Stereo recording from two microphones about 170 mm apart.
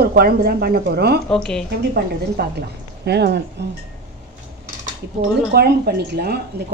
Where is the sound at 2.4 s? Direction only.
70° right (ahead or behind).